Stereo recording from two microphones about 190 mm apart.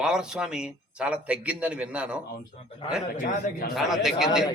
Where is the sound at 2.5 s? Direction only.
30° left (ahead or behind).